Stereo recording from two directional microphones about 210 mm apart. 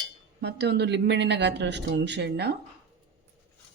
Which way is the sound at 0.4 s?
55° right (ahead or behind).